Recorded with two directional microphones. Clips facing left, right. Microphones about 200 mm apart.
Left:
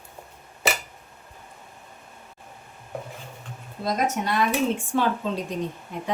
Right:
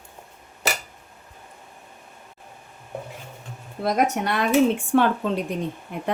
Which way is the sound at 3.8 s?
65° right (ahead or behind).